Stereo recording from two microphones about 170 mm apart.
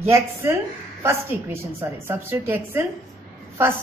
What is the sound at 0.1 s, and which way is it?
A woman's voice, 15° right (ahead or behind).